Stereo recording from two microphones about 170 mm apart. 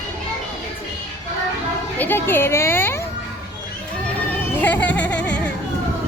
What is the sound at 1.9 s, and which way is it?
Speech, 10° left (ahead or behind).